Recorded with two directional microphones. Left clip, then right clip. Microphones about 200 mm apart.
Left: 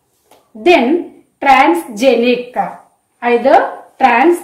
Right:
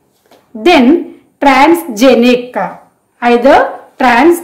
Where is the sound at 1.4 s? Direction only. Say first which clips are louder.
Right 2 dB; 45° right (ahead or behind).